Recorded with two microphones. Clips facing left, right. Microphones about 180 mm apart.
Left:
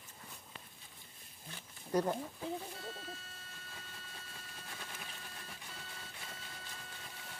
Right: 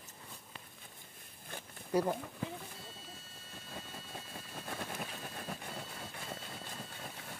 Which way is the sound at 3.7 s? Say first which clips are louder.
Right 9 dB; 55° right (ahead or behind).